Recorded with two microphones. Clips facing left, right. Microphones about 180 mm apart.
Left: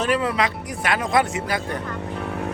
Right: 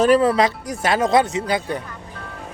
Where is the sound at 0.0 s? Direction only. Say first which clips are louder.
Right 7 dB; 40° right (ahead or behind); by 1.6 s 20° right (ahead or behind).